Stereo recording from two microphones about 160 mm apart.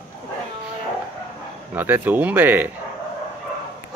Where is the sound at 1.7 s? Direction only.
10° right (ahead or behind).